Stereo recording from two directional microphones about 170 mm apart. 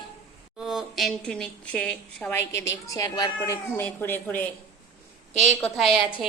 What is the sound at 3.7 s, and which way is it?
Speech, 10° left (ahead or behind).